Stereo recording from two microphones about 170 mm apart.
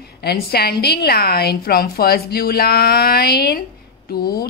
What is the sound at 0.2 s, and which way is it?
A woman's voice, 70° left (ahead or behind).